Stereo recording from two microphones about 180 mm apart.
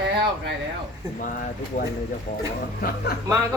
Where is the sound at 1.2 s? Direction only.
45° left (ahead or behind).